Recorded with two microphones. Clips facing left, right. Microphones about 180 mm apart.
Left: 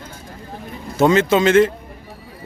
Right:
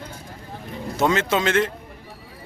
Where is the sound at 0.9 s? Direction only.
Centre (ahead or behind).